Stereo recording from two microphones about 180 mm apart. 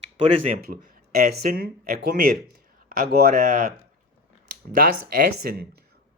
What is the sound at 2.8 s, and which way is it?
Speech, 50° right (ahead or behind).